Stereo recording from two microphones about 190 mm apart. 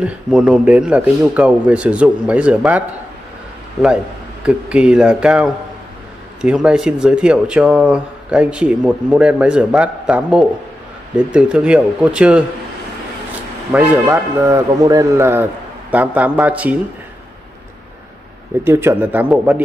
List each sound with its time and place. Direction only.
0.0 s speech: 5° right (ahead or behind)
13.7 s speech: 10° right (ahead or behind)
18.6 s speech: 15° right (ahead or behind)